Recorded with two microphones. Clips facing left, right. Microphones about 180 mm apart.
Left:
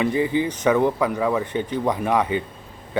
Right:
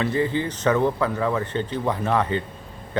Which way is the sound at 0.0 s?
15° left (ahead or behind).